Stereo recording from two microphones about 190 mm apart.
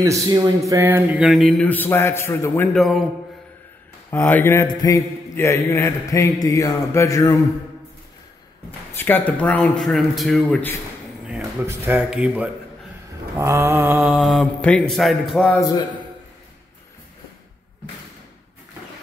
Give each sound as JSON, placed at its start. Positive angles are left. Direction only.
{"t": 0.0, "sound": "speech", "side_deg": -15}
{"t": 4.1, "sound": "mantra", "side_deg": 10}
{"t": 8.9, "sound": "mantra", "side_deg": 10}
{"t": 11.2, "sound": "speech", "side_deg": -10}
{"t": 13.4, "sound": "mantra", "side_deg": -15}
{"t": 13.9, "sound": "speech", "side_deg": 0}